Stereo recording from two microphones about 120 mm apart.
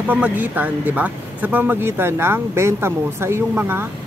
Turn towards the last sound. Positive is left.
turn(degrees=-20)  # may be behind; listen again after turning